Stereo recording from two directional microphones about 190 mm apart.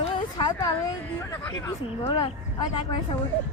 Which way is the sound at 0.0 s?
25° left (ahead or behind).